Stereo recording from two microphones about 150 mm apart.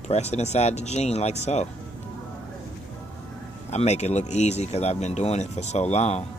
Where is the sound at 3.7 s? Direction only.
50° left (ahead or behind).